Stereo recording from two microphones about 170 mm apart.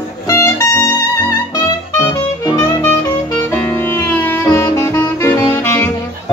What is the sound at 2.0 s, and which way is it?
Music, 20° left (ahead or behind).